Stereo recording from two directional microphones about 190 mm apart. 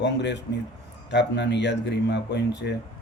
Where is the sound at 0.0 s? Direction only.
65° left (ahead or behind).